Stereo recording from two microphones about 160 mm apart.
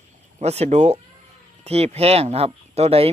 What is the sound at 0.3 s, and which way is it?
Speech, 40° right (ahead or behind).